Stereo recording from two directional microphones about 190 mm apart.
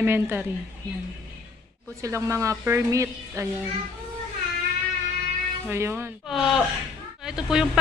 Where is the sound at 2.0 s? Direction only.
15° right (ahead or behind).